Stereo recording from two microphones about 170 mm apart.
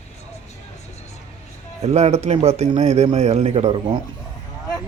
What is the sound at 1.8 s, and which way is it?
A man's voice, 40° right (ahead or behind).